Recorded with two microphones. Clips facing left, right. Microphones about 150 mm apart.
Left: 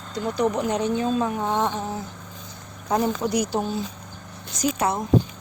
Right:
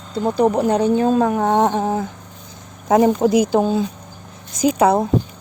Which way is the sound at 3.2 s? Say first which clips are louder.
Right 9 dB; 55° right (ahead or behind).